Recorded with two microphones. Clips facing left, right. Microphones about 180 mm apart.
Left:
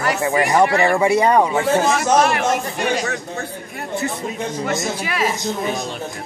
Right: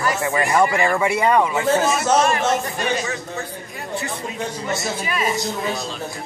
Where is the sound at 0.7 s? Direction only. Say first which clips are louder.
Left 4 dB; 30° left (ahead or behind).